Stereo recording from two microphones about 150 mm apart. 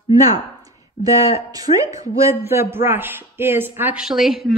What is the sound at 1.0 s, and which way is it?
Speech, 45° left (ahead or behind).